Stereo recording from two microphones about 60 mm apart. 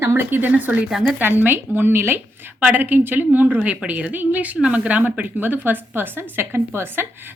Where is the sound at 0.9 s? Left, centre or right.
Centre.